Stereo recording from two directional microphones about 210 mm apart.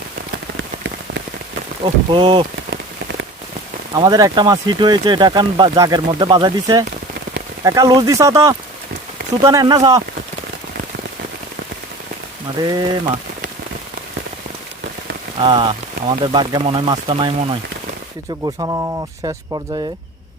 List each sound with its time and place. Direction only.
1.8 s speech: 25° right (ahead or behind)
3.9 s speech: 15° right (ahead or behind)
12.6 s speech: 20° right (ahead or behind)
15.4 s speech: 25° right (ahead or behind)